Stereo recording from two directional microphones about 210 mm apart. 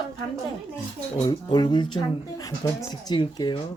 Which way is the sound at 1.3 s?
20° left (ahead or behind).